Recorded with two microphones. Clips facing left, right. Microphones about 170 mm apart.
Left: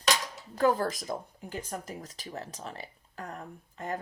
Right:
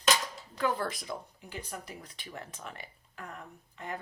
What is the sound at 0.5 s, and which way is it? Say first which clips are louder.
Speech: left 6 dB; 40° left (ahead or behind).